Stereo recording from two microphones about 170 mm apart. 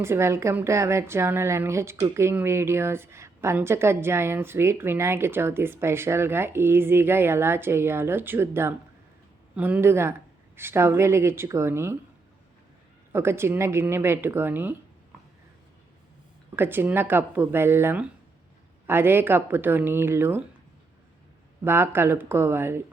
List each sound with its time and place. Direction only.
0.0 s a woman's voice: 15° right (ahead or behind)
13.1 s a woman's voice: 15° right (ahead or behind)
16.6 s a woman's voice: 10° right (ahead or behind)
21.6 s a woman's voice: 15° right (ahead or behind)